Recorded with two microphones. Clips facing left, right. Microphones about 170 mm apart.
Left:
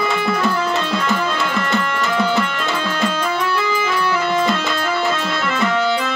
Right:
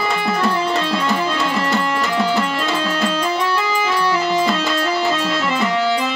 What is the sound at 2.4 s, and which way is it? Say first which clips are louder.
Music: right 2 dB; 30° right (ahead or behind).